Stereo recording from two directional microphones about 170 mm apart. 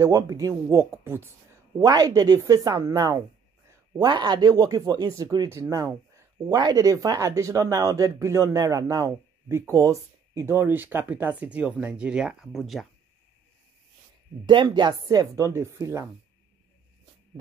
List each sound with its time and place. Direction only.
0.0 s speech: 20° right (ahead or behind); by 12.8 s centre (ahead or behind)
14.4 s speech: 30° right (ahead or behind)